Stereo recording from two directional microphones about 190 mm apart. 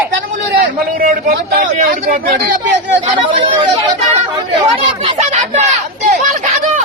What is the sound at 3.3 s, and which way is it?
Speech, 25° right (ahead or behind).